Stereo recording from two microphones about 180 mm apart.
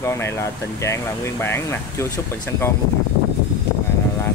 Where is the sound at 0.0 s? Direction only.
15° left (ahead or behind).